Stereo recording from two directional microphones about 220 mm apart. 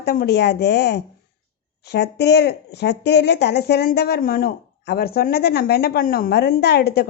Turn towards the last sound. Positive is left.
turn(degrees=45)  # may be behind; listen again after turning